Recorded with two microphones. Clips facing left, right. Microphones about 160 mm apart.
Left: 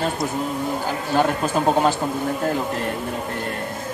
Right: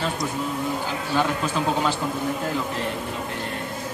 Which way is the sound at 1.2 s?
45° left (ahead or behind).